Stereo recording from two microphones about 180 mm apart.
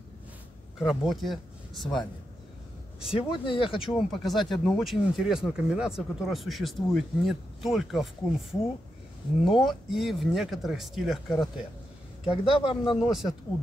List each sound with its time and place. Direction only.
0.7 s speech: centre (ahead or behind)
3.1 s speech: 30° left (ahead or behind)
3.8 s speech: centre (ahead or behind)
12.4 s speech: 30° left (ahead or behind)
12.9 s speech: centre (ahead or behind)